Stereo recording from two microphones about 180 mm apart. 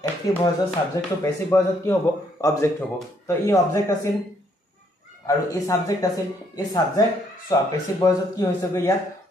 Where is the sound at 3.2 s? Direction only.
15° left (ahead or behind).